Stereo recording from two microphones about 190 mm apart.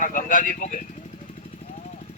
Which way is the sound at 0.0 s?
45° left (ahead or behind).